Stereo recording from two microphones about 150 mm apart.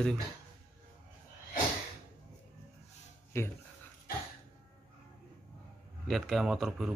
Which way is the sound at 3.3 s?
15° left (ahead or behind).